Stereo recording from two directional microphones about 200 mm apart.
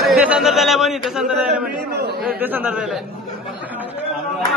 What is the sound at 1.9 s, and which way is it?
Chatter, 55° right (ahead or behind).